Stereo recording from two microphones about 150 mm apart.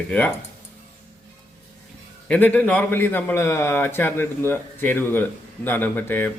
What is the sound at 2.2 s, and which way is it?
A man's voice, 10° left (ahead or behind).